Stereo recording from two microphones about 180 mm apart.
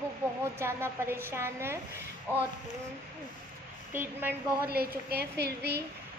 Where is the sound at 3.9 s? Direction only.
10° right (ahead or behind).